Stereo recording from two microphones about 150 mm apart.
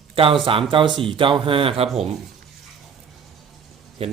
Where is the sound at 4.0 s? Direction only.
40° right (ahead or behind).